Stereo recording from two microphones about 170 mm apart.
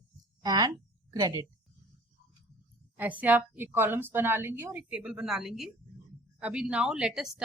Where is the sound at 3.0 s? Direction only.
10° right (ahead or behind).